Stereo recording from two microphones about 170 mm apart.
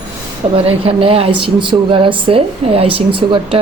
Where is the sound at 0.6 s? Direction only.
35° right (ahead or behind).